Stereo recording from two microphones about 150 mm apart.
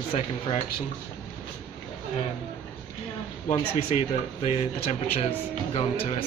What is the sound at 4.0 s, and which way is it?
A man's voice, 45° left (ahead or behind).